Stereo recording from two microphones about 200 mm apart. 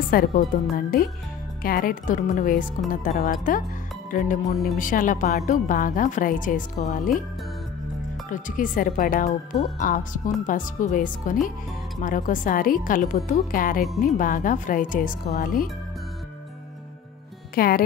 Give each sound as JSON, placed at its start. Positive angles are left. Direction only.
{"t": 0.1, "sound": "a woman's voice", "side_deg": 45}
{"t": 8.3, "sound": "a woman's voice", "side_deg": 40}
{"t": 17.6, "sound": "speech", "side_deg": 50}